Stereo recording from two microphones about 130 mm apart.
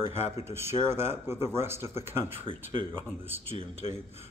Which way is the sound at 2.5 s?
45° right (ahead or behind).